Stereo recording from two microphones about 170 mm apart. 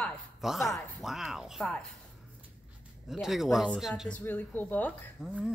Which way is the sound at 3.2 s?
Centre (ahead or behind).